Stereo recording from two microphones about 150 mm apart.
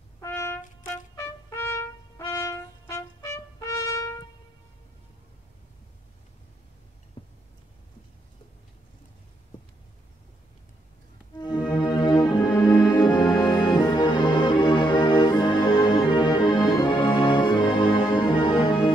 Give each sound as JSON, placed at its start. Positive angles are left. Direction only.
{"t": 0.2, "sound": "trumpet", "side_deg": 15}
{"t": 7.2, "sound": "a sound", "side_deg": 40}
{"t": 11.3, "sound": "music", "side_deg": 30}